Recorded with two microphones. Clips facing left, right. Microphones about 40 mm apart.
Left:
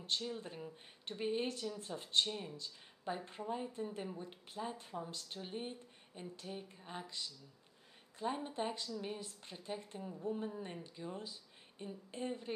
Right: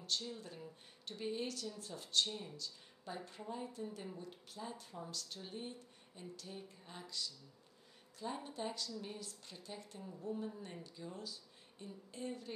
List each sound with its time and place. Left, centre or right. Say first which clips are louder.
0.0 s speech: left 2 dB; left
8.4 s speech: left 3 dB; left